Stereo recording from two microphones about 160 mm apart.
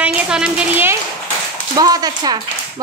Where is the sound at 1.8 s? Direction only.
25° right (ahead or behind).